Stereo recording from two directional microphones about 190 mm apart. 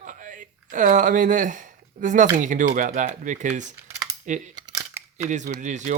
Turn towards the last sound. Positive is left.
turn(degrees=-40)  # may be behind; listen again after turning